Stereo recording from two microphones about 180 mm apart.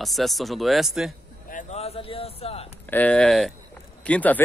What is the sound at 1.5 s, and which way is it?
Speech, 40° left (ahead or behind).